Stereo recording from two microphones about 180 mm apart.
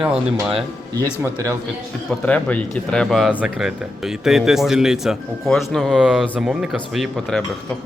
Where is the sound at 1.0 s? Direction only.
20° right (ahead or behind).